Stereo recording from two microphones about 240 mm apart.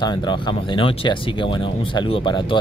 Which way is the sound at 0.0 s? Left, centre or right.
Centre.